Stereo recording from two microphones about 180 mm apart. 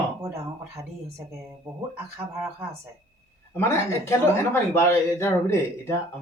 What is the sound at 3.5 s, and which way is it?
Speech, 15° left (ahead or behind).